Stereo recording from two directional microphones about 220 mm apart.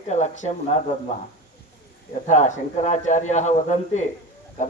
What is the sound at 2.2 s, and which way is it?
Speech, 35° left (ahead or behind).